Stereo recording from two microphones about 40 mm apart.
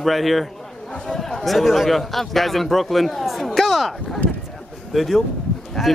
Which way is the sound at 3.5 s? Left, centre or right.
Centre.